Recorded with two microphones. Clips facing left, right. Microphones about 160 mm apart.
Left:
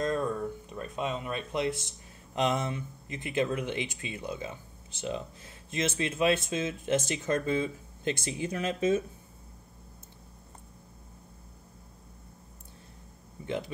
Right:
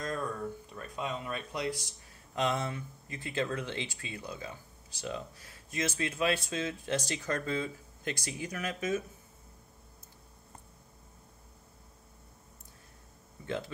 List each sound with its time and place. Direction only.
0.0 s speech: 25° left (ahead or behind)